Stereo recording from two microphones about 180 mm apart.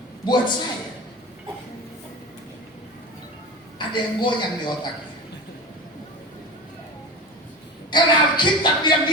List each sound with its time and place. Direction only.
0.3 s a woman's voice: 25° left (ahead or behind)
3.8 s a woman's voice: 25° left (ahead or behind)
7.9 s speech: 25° left (ahead or behind)